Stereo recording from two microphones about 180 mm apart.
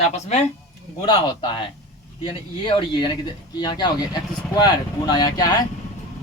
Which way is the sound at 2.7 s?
30° left (ahead or behind).